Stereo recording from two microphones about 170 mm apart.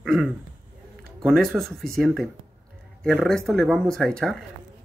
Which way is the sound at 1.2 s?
Centre (ahead or behind).